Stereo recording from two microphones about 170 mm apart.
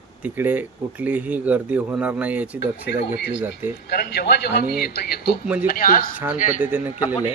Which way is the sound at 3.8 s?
75° left (ahead or behind).